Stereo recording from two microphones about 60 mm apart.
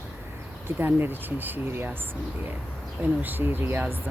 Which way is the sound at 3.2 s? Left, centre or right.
Right.